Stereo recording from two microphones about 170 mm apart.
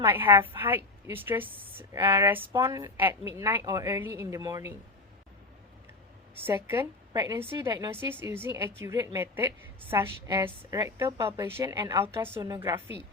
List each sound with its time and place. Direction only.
0.0 s a woman's voice: 10° right (ahead or behind)
6.3 s a woman's voice: 15° right (ahead or behind)
7.9 s a woman's voice: 15° right (ahead or behind)